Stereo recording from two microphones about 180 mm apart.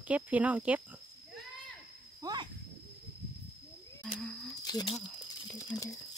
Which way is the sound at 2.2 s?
20° right (ahead or behind).